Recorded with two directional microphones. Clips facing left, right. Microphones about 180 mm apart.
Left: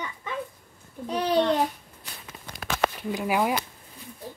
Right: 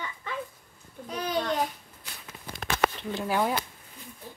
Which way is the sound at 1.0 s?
30° left (ahead or behind).